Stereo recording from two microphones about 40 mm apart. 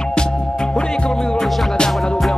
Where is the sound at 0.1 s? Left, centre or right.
Left.